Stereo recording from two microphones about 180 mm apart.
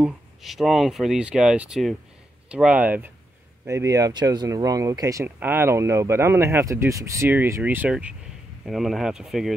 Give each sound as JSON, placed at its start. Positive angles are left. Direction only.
{"t": 0.0, "sound": "speech", "side_deg": 0}